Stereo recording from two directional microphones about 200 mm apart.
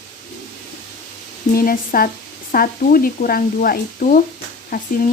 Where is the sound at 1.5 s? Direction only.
45° left (ahead or behind).